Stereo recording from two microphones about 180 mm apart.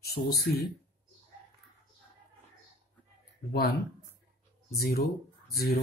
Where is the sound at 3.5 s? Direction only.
60° left (ahead or behind).